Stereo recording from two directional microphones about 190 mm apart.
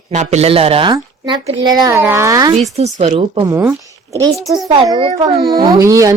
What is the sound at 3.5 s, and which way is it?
Speech, 15° right (ahead or behind).